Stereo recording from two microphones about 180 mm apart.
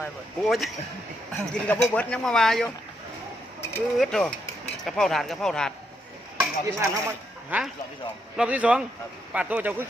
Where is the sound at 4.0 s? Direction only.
5° left (ahead or behind).